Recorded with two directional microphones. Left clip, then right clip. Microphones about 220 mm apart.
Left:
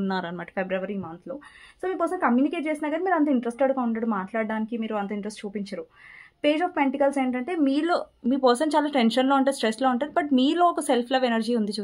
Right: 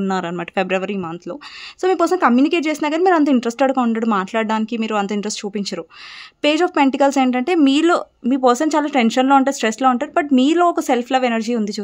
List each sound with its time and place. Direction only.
0.0 s speech: 30° right (ahead or behind)
0.6 s speech: 45° right (ahead or behind); by 11.8 s 30° right (ahead or behind)